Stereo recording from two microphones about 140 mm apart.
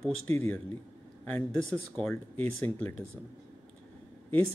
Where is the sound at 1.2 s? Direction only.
10° left (ahead or behind).